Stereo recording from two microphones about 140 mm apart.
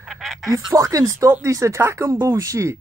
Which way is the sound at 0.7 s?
25° right (ahead or behind).